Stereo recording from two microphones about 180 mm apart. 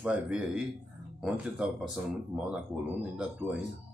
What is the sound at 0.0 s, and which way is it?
Speech, 5° right (ahead or behind).